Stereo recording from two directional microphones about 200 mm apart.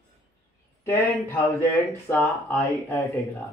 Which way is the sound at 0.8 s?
10° left (ahead or behind).